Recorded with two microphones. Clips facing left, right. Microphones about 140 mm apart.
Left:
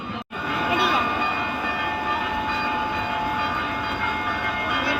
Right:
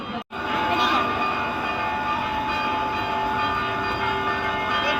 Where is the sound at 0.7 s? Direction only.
5° left (ahead or behind).